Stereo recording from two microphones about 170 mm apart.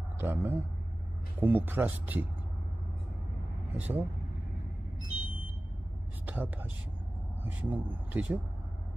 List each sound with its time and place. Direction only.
0.2 s speech: 10° right (ahead or behind)
3.7 s speech: 10° right (ahead or behind)
6.2 s speech: 10° right (ahead or behind)